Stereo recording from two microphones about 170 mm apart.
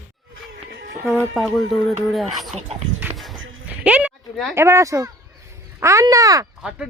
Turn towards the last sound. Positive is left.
turn(degrees=-5)  # may be behind; listen again after turning